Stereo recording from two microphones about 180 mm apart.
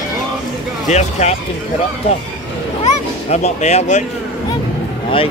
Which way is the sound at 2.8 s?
40° left (ahead or behind).